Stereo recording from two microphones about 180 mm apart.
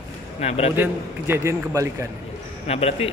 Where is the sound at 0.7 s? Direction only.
10° right (ahead or behind).